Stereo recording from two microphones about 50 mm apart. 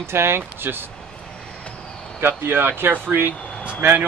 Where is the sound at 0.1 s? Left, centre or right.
Right.